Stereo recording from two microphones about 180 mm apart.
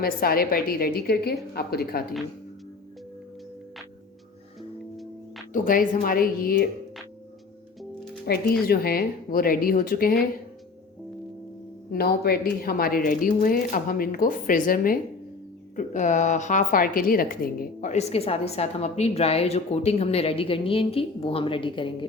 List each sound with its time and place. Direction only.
0.0 s a woman's voice: 55° left (ahead or behind)
5.5 s speech: 50° left (ahead or behind)
8.3 s a woman's voice: 60° left (ahead or behind)
11.9 s a woman's voice: 60° left (ahead or behind); by 21.9 s 30° left (ahead or behind)